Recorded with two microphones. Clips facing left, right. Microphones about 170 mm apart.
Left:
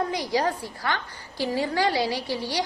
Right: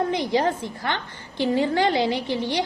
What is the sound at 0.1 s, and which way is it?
A woman's voice, 20° right (ahead or behind).